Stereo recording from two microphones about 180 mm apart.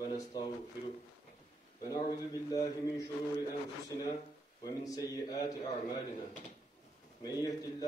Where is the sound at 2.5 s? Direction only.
20° left (ahead or behind).